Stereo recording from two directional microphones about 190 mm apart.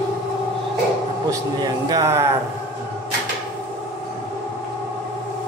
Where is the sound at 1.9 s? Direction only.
15° right (ahead or behind).